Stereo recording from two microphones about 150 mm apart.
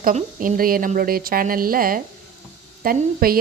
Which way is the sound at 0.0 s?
65° right (ahead or behind).